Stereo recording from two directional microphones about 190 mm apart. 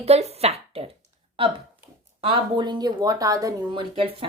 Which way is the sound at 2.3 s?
25° right (ahead or behind).